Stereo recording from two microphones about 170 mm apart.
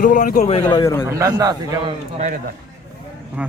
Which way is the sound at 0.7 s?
25° left (ahead or behind).